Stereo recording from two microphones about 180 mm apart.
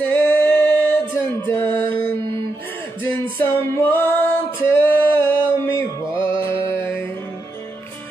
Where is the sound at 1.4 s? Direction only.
10° left (ahead or behind).